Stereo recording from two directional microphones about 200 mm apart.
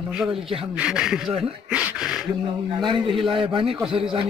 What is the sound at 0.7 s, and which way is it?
Speech, 5° right (ahead or behind).